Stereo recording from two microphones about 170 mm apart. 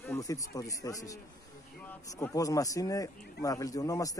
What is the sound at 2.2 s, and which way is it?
Speech, 20° left (ahead or behind).